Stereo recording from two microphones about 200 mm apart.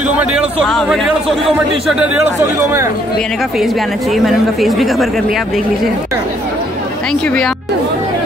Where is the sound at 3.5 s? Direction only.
Centre (ahead or behind).